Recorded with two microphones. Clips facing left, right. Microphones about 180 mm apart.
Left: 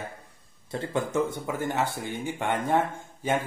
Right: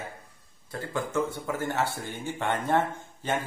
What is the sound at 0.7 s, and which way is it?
A man's voice, 25° left (ahead or behind).